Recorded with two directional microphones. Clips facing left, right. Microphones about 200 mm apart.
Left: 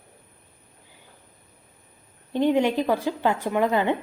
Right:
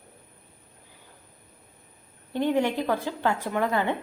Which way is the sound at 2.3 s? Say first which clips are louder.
Left 4 dB; 15° left (ahead or behind).